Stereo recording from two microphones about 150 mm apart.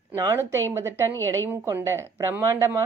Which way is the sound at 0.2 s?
25° right (ahead or behind).